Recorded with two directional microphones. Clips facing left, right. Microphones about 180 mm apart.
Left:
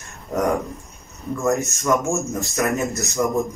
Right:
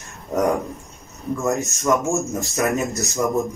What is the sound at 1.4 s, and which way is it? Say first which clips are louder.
Speech: left 2 dB; centre (ahead or behind).